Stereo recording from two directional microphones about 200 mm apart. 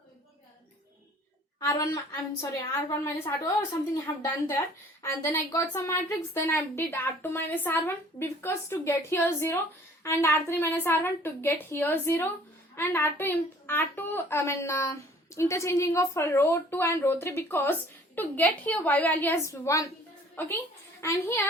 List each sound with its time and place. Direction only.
1.5 s a woman's voice: 15° left (ahead or behind)